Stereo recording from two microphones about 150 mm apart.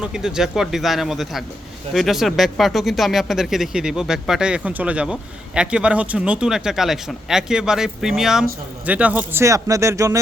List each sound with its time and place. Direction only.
0.0 s speech: 5° right (ahead or behind); by 10.2 s 20° right (ahead or behind)